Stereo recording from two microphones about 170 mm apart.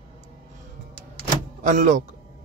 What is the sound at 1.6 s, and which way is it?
Speech, 45° right (ahead or behind).